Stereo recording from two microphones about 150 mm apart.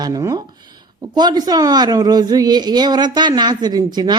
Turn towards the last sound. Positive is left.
turn(degrees=-30)  # may be behind; listen again after turning